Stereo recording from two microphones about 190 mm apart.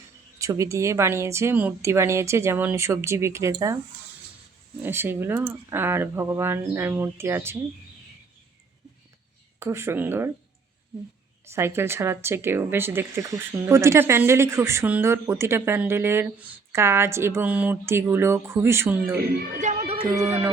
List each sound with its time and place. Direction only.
0.3 s speech: 15° right (ahead or behind)
4.8 s speech: 10° right (ahead or behind)
9.6 s speech: 15° right (ahead or behind)
11.4 s speech: 15° right (ahead or behind)
19.5 s speech: 40° right (ahead or behind)
20.1 s speech: 15° right (ahead or behind)